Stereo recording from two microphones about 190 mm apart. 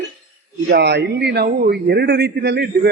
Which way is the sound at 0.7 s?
60° right (ahead or behind).